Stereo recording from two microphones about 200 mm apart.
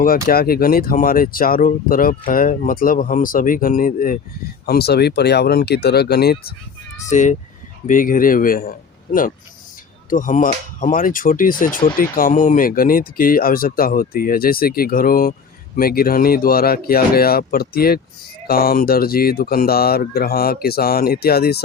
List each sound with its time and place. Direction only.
0.0 s speech: 45° left (ahead or behind)
7.1 s speech: 40° left (ahead or behind)
10.1 s speech: 40° left (ahead or behind)